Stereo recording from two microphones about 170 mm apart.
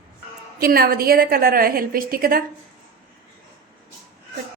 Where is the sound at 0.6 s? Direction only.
60° right (ahead or behind).